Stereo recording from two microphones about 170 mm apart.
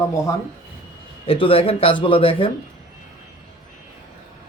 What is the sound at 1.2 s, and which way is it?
Speech, 35° left (ahead or behind).